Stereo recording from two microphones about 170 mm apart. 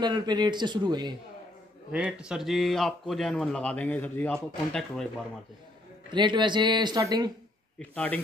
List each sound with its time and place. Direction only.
0.0 s a man's voice: 25° right (ahead or behind)
1.9 s speech: 5° right (ahead or behind)
6.1 s a man's voice: 25° right (ahead or behind)
7.8 s a man's voice: 10° left (ahead or behind)